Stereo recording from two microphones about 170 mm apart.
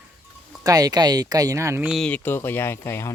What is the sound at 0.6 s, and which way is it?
Speech, 20° right (ahead or behind).